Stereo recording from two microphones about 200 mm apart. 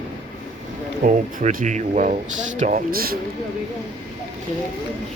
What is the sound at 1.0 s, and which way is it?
Speech, 40° right (ahead or behind).